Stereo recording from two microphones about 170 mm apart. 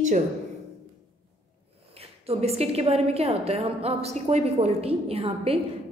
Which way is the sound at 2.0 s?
35° right (ahead or behind).